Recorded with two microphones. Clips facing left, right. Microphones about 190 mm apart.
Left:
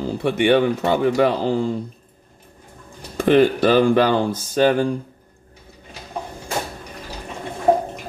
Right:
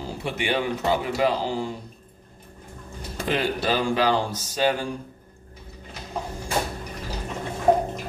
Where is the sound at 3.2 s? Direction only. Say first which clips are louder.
Left 11 dB; 55° left (ahead or behind).